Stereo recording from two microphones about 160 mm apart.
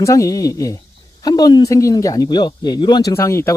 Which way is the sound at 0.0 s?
20° left (ahead or behind).